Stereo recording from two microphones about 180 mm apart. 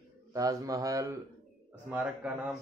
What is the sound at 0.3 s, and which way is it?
Speech, 20° right (ahead or behind).